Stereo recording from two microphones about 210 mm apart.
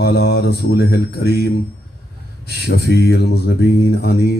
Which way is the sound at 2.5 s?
50° left (ahead or behind).